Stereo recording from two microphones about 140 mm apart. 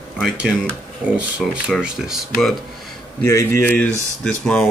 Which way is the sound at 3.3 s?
15° left (ahead or behind).